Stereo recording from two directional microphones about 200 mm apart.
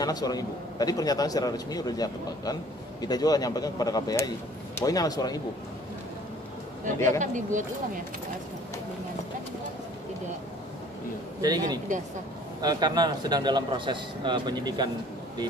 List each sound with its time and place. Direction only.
0.0 s a man's voice: 20° left (ahead or behind)
7.2 s speech: 40° right (ahead or behind)
11.4 s speech: 20° right (ahead or behind)